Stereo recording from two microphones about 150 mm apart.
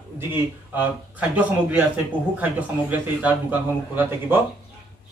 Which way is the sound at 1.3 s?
10° right (ahead or behind).